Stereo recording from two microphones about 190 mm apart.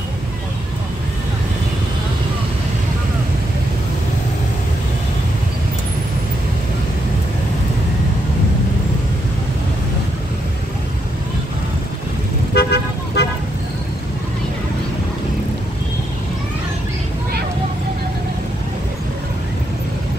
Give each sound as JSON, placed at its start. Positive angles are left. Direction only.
{"t": 12.5, "sound": "toot", "side_deg": 60}